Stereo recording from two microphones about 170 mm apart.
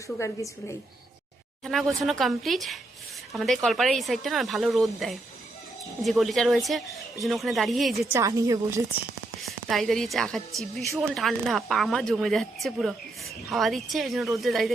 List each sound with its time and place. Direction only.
0.2 s a woman's voice: 15° left (ahead or behind)
2.0 s a woman's voice: centre (ahead or behind)
8.1 s a woman's voice: 20° right (ahead or behind)
9.4 s a woman's voice: centre (ahead or behind)